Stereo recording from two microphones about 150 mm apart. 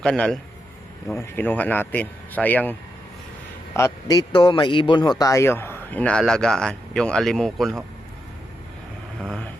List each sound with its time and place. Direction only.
0.0 s speech: 5° left (ahead or behind)
1.1 s speech: 15° left (ahead or behind)
3.8 s a man's voice: 20° left (ahead or behind)
5.2 s speech: 20° left (ahead or behind); by 7.9 s centre (ahead or behind)
9.2 s speech: 5° left (ahead or behind)